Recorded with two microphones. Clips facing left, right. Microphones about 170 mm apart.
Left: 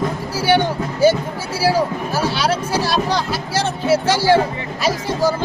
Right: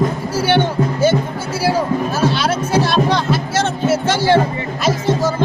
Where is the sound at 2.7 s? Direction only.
35° left (ahead or behind).